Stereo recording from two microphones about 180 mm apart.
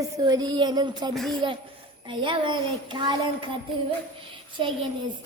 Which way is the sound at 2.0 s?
25° right (ahead or behind).